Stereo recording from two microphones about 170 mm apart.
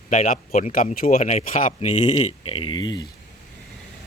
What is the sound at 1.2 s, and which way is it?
Speech, 40° left (ahead or behind).